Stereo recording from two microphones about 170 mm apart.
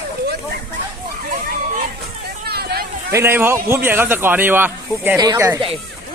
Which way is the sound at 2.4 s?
65° right (ahead or behind).